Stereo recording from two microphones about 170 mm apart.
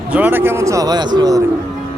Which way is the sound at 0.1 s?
10° right (ahead or behind).